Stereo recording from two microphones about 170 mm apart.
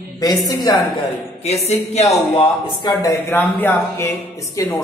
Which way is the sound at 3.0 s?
15° left (ahead or behind).